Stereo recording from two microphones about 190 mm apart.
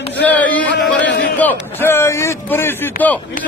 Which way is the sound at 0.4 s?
5° left (ahead or behind).